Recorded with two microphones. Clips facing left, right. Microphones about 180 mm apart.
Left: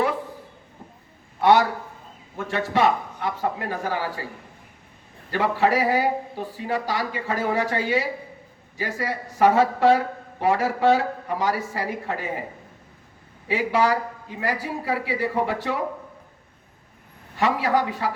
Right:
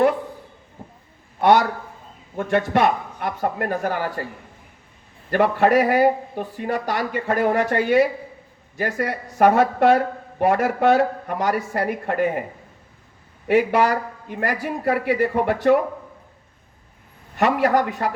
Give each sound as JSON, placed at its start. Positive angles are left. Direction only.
{"t": 1.4, "sound": "a man's voice", "side_deg": -55}
{"t": 5.3, "sound": "a man's voice", "side_deg": -55}
{"t": 13.5, "sound": "a man's voice", "side_deg": -55}
{"t": 17.4, "sound": "a man's voice", "side_deg": -55}